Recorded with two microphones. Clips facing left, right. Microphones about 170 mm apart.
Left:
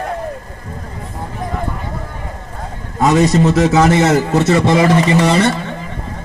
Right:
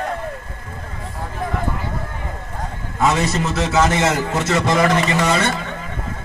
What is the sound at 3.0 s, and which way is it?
A man's voice, 40° left (ahead or behind).